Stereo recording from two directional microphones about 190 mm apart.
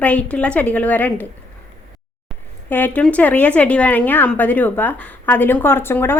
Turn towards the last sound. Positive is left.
turn(degrees=10)  # may be behind; listen again after turning